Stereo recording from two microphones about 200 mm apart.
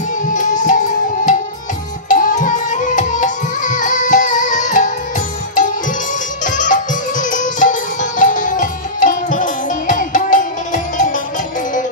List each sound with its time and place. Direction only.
0.3 s music: 40° left (ahead or behind)
6.4 s music: 40° left (ahead or behind)